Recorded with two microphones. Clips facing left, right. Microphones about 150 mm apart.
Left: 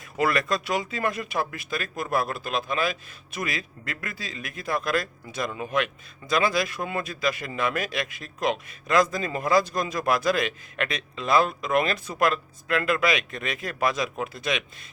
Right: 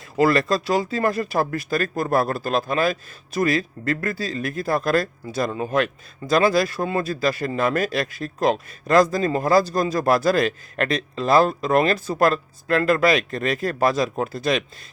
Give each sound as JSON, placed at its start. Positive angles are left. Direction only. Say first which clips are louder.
{"t": 0.2, "sound": "speech", "louder": "right 6 dB", "side_deg": -30}